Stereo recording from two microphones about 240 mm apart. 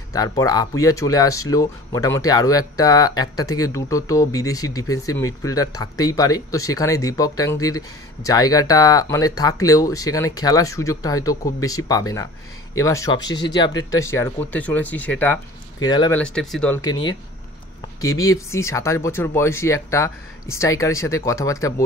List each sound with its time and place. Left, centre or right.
0.1 s speech: centre
15.8 s speech: centre
16.2 s speech: centre
16.8 s speech: centre
18.2 s speech: centre